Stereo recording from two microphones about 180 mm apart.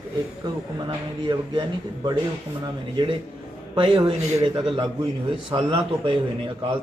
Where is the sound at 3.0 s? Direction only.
25° right (ahead or behind).